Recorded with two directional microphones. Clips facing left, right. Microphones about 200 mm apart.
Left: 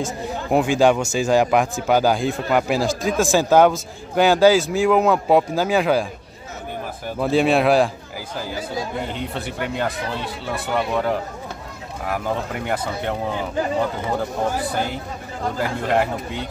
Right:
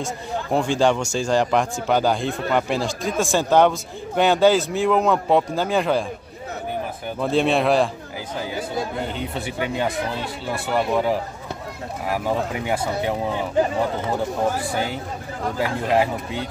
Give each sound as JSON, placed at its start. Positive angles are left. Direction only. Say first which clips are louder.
{"t": 0.0, "sound": "speech", "louder": "left 2 dB", "side_deg": 5}
{"t": 7.2, "sound": "speech", "louder": "left 2 dB", "side_deg": 5}
{"t": 9.3, "sound": "speech", "louder": "right 1 dB", "side_deg": 0}
{"t": 15.5, "sound": "speech", "louder": "right 1 dB", "side_deg": 0}